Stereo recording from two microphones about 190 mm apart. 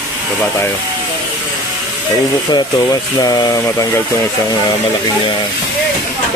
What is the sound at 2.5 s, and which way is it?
Speech, 20° left (ahead or behind).